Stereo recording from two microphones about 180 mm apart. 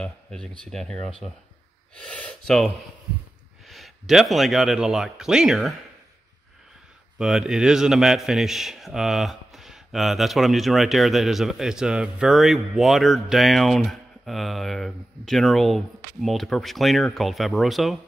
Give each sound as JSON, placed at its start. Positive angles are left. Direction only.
{"t": 0.0, "sound": "a man's voice", "side_deg": 5}
{"t": 7.2, "sound": "a man's voice", "side_deg": -5}